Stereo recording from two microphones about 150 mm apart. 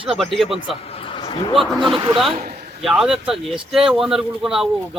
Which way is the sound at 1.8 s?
35° right (ahead or behind).